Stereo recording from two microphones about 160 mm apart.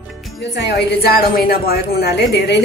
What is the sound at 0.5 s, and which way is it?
A woman's voice, 85° left.